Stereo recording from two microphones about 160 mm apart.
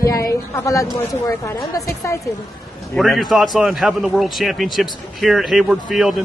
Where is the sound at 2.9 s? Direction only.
Centre (ahead or behind).